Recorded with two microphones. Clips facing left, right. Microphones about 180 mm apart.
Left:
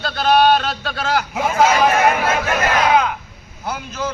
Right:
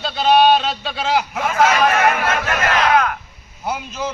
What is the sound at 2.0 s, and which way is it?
Speech, 10° left (ahead or behind).